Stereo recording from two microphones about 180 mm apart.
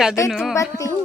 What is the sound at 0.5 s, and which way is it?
Speech, 15° left (ahead or behind).